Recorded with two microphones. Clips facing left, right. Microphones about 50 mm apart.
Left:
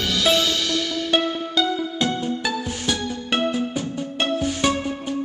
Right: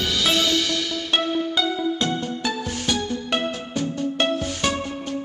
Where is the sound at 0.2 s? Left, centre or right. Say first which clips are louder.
Left 3 dB; centre.